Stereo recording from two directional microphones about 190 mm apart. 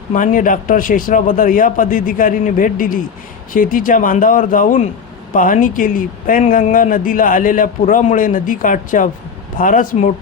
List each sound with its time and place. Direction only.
0.1 s speech: 45° left (ahead or behind)